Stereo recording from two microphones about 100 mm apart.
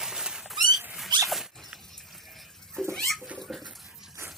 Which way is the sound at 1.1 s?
35° right (ahead or behind).